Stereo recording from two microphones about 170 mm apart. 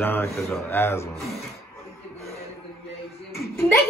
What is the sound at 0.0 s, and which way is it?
A man's voice, 15° left (ahead or behind).